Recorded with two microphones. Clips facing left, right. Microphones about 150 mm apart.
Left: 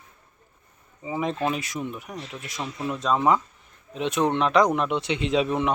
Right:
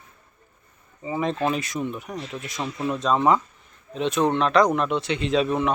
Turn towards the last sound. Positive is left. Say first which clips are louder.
# right 1 dB
turn(degrees=15)  # may be behind; listen again after turning